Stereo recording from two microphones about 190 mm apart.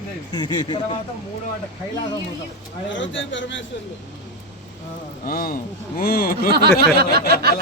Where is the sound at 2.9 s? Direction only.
75° left (ahead or behind).